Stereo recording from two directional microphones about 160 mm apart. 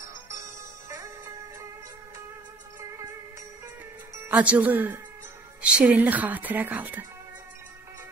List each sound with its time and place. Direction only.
0.8 s music: 20° right (ahead or behind)
4.2 s speech: 10° right (ahead or behind)